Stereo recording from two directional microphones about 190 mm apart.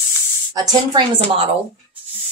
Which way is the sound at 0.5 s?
20° right (ahead or behind).